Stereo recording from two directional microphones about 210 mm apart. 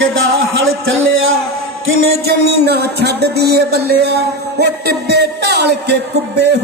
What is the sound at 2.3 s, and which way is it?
Music, 50° right (ahead or behind).